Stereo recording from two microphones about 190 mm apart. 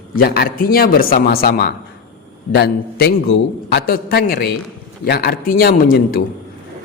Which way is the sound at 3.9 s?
50° left (ahead or behind).